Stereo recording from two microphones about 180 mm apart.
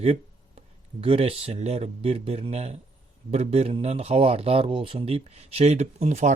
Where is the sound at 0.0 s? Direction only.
35° right (ahead or behind).